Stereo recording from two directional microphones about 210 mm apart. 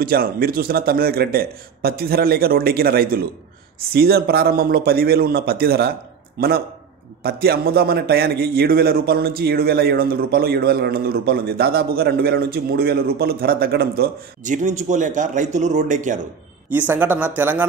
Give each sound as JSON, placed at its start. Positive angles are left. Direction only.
{"t": 0.0, "sound": "a man's voice", "side_deg": -45}
{"t": 7.2, "sound": "a man's voice", "side_deg": -50}
{"t": 16.7, "sound": "speech", "side_deg": -10}